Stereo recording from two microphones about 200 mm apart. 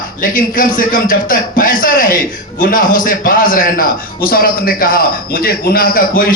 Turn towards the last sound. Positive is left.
turn(degrees=45)  # may be behind; listen again after turning